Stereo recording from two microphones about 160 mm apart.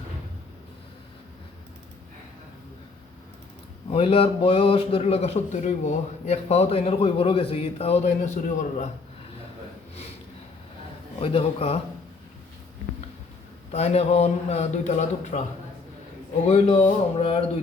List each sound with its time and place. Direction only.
3.8 s a man's voice: 35° left (ahead or behind)
11.2 s a man's voice: 35° left (ahead or behind)
13.7 s a man's voice: 40° left (ahead or behind)
16.5 s a man's voice: 40° left (ahead or behind)